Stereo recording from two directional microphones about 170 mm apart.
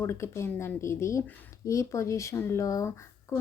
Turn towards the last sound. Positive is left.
turn(degrees=20)  # may be behind; listen again after turning